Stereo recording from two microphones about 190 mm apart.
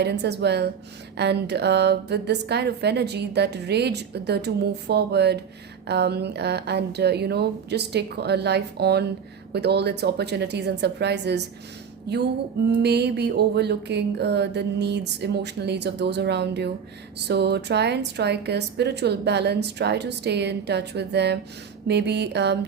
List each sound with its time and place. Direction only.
0.0 s a woman's voice: 60° right (ahead or behind)